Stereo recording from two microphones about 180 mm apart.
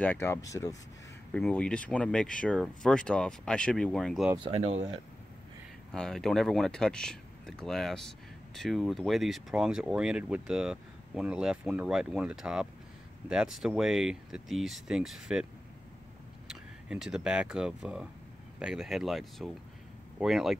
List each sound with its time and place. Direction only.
0.0 s speech: 10° left (ahead or behind)
1.3 s speech: 5° left (ahead or behind)
4.4 s speech: 30° right (ahead or behind)
5.9 s speech: 5° left (ahead or behind)
16.9 s speech: 5° right (ahead or behind)